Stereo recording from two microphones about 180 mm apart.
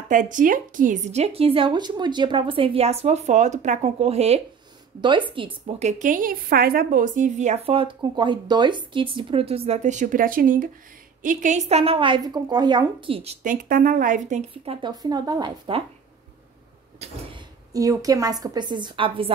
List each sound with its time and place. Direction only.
0.1 s a woman's voice: 45° right (ahead or behind); by 5.9 s 30° right (ahead or behind)
5.9 s a woman's voice: 45° right (ahead or behind)
14.5 s a woman's voice: 30° right (ahead or behind)
17.0 s a woman's voice: 35° right (ahead or behind)
17.7 s a woman's voice: 20° right (ahead or behind)